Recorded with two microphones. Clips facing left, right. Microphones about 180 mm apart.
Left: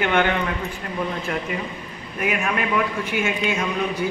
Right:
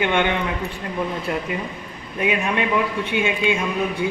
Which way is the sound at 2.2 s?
25° right (ahead or behind).